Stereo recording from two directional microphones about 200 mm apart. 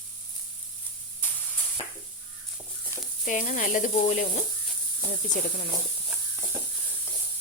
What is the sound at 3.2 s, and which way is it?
Speech, 40° left (ahead or behind).